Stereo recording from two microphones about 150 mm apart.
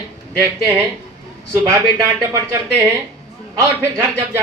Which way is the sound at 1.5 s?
20° right (ahead or behind).